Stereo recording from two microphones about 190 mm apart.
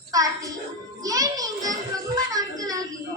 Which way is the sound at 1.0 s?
20° right (ahead or behind).